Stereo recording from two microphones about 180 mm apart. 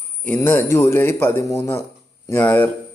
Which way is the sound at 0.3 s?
15° left (ahead or behind).